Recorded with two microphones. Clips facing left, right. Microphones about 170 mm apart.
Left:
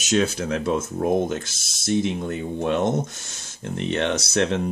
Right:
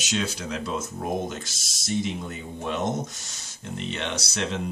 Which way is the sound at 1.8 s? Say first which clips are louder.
Left 5 dB; 55° left (ahead or behind).